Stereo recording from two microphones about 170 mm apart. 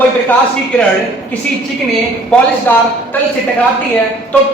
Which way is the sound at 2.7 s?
10° left (ahead or behind).